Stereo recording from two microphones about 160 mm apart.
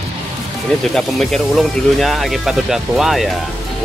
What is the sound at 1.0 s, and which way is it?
Speech, centre (ahead or behind).